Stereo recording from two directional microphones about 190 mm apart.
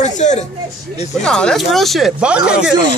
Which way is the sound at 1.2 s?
5° left (ahead or behind).